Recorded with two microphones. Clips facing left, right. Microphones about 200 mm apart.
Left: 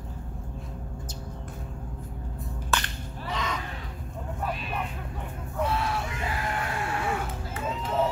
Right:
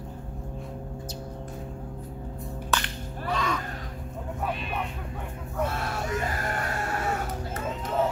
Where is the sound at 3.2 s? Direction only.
20° left (ahead or behind).